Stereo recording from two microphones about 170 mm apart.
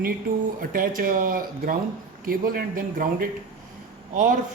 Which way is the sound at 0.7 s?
55° right (ahead or behind).